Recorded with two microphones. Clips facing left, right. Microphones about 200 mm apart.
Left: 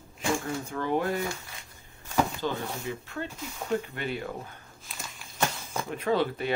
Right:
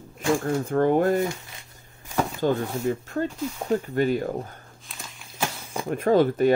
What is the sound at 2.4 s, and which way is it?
Speech, 45° right (ahead or behind).